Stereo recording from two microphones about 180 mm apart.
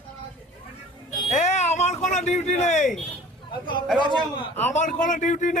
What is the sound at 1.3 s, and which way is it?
Speech, 40° left (ahead or behind).